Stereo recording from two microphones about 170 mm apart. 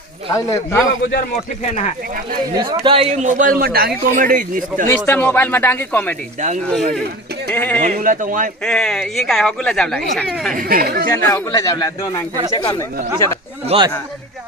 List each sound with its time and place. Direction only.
0.3 s speech: 15° left (ahead or behind)
2.6 s a man's voice: 30° right (ahead or behind); by 4.9 s 50° right (ahead or behind)
4.9 s speech: 10° left (ahead or behind)
7.5 s speech: 10° left (ahead or behind)
7.9 s a man's voice: 50° right (ahead or behind)
8.6 s speech: 5° left (ahead or behind)
10.5 s speech: 55° right (ahead or behind)
11.1 s speech: 20° left (ahead or behind)
13.7 s speech: 25° right (ahead or behind)